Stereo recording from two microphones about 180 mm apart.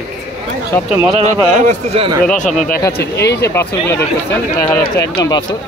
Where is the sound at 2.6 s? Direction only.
55° left (ahead or behind).